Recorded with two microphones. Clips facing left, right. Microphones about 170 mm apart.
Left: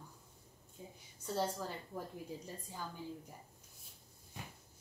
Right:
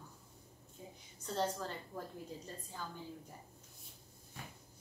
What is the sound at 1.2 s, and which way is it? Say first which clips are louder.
Speech: even; 10° left (ahead or behind).